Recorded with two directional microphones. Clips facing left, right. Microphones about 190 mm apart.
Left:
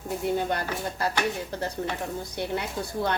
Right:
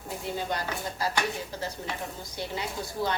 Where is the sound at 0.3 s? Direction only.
55° left (ahead or behind).